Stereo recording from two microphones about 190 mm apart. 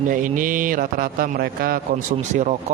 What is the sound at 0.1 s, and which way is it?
Speech, 45° right (ahead or behind).